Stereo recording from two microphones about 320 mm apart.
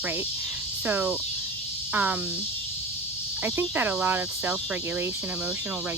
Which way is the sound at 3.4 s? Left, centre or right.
Centre.